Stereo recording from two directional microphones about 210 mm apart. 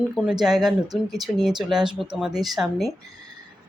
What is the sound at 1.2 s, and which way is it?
Speech, centre (ahead or behind).